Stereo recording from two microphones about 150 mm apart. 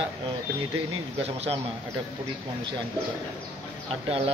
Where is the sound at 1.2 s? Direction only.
40° right (ahead or behind).